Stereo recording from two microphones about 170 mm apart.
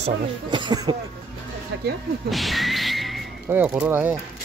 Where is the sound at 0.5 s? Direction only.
25° right (ahead or behind).